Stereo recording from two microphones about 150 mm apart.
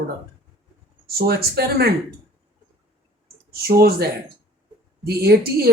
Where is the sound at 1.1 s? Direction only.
90° right.